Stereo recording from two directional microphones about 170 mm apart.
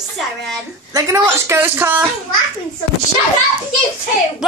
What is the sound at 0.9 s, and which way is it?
A woman's voice, 15° right (ahead or behind).